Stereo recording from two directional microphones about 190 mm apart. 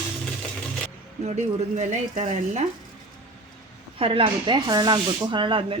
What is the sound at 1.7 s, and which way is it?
Speech, 40° right (ahead or behind).